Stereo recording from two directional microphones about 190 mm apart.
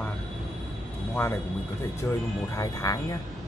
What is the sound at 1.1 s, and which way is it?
Speech, 10° left (ahead or behind).